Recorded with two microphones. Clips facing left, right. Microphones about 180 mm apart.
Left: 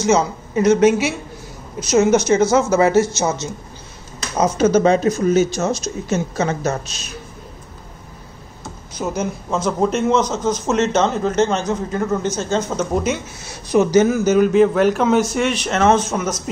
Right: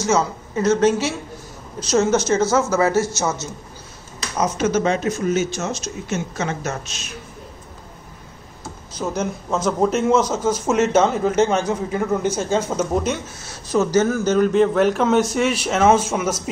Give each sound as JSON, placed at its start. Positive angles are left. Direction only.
{"t": 0.0, "sound": "speech", "side_deg": 15}
{"t": 4.4, "sound": "speech", "side_deg": 35}
{"t": 8.9, "sound": "a man's voice", "side_deg": 5}
{"t": 12.9, "sound": "a man's voice", "side_deg": 5}
{"t": 13.5, "sound": "a man's voice", "side_deg": 15}